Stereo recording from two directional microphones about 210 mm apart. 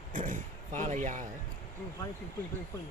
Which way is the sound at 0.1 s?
40° right (ahead or behind).